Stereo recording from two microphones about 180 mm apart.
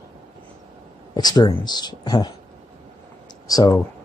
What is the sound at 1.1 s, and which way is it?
Speech, 20° left (ahead or behind).